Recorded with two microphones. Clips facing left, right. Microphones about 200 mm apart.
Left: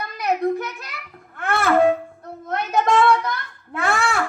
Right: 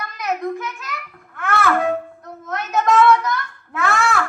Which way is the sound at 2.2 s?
30° left (ahead or behind).